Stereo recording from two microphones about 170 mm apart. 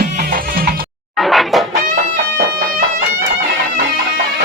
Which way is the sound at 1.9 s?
55° right (ahead or behind).